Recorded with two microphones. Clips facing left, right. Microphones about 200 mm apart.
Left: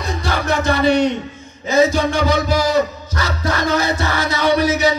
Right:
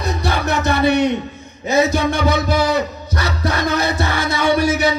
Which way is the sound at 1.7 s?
60° right (ahead or behind).